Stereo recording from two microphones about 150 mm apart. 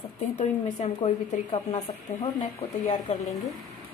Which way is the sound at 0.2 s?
50° left (ahead or behind).